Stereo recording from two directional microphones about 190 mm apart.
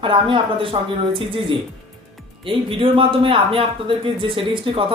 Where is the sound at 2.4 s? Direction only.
25° right (ahead or behind).